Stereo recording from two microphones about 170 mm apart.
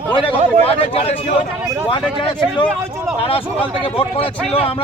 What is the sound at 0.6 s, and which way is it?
Speech, 35° left (ahead or behind).